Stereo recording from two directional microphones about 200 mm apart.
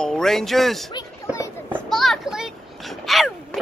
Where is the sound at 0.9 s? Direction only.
15° left (ahead or behind).